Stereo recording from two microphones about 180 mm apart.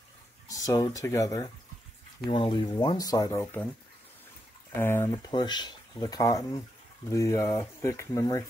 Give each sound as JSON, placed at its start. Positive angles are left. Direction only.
{"t": 0.5, "sound": "speech", "side_deg": 20}
{"t": 4.7, "sound": "speech", "side_deg": 15}
{"t": 5.3, "sound": "speech", "side_deg": 25}